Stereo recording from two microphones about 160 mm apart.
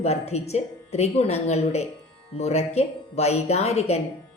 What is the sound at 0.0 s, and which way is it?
A woman's voice, 40° left (ahead or behind).